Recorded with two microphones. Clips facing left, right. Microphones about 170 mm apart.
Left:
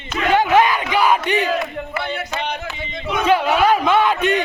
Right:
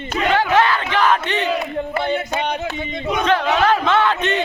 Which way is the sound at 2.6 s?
50° right (ahead or behind).